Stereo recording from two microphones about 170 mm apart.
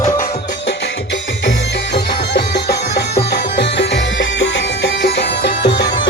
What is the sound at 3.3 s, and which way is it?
Music, 90° left.